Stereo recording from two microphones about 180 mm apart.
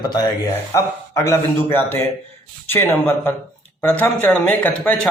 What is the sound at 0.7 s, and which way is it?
Speech, 15° left (ahead or behind).